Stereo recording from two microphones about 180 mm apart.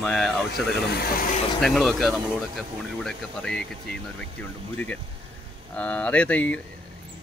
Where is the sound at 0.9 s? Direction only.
55° left (ahead or behind).